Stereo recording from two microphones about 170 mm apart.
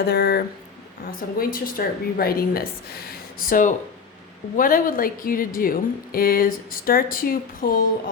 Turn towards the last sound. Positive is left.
turn(degrees=55)  # may be behind; listen again after turning